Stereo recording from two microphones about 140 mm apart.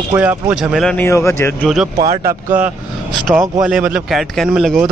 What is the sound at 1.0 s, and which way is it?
Speech, 20° left (ahead or behind).